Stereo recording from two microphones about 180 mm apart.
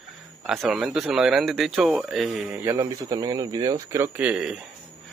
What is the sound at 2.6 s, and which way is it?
A man's voice, 15° right (ahead or behind).